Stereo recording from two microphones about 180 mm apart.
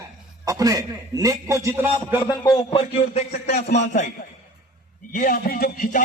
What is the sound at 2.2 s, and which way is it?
Speech, 15° left (ahead or behind).